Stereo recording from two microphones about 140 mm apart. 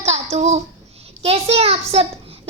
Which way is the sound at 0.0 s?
50° right (ahead or behind).